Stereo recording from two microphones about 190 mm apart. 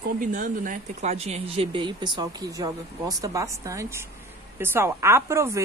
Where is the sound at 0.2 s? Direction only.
45° right (ahead or behind).